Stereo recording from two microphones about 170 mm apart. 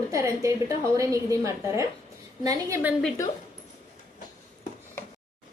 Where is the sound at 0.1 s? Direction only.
20° right (ahead or behind).